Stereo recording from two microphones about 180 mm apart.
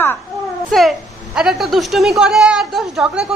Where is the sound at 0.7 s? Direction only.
Centre (ahead or behind).